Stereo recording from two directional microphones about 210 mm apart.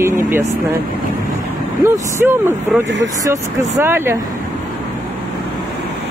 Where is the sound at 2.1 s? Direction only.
10° right (ahead or behind).